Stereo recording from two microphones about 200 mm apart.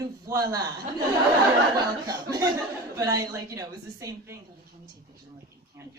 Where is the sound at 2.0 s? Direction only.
15° right (ahead or behind).